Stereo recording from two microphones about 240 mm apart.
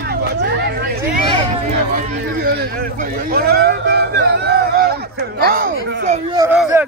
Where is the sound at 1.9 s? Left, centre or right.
Right.